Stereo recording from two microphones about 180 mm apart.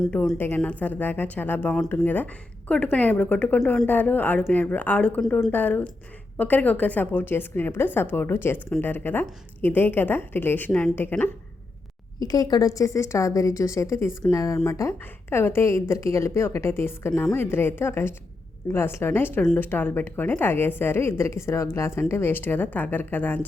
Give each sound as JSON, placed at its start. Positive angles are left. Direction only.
{"t": 0.1, "sound": "speech", "side_deg": 10}
{"t": 12.2, "sound": "speech", "side_deg": 20}